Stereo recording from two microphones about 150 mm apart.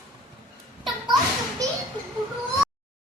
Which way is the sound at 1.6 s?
25° right (ahead or behind).